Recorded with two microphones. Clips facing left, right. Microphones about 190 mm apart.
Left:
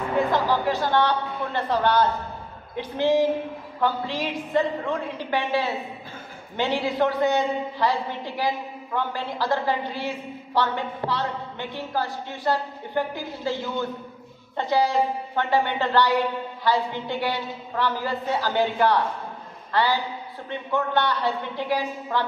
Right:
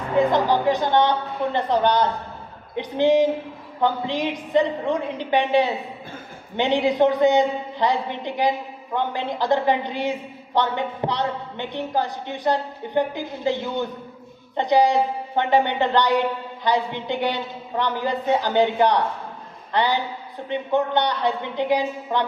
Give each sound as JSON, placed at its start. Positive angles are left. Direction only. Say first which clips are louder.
{"t": 0.2, "sound": "a woman's voice", "louder": "right 5 dB", "side_deg": -20}